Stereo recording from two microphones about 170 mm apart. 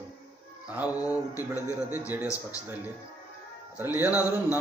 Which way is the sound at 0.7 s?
10° right (ahead or behind).